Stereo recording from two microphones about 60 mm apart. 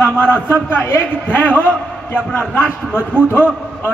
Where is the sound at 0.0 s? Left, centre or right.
Left.